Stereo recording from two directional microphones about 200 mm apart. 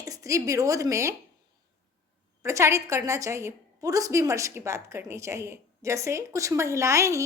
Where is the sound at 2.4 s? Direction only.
15° right (ahead or behind).